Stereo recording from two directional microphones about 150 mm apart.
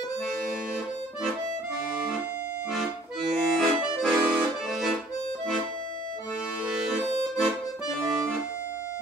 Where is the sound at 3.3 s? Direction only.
Centre (ahead or behind).